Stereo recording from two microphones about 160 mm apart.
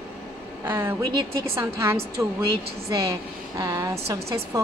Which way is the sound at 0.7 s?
15° right (ahead or behind).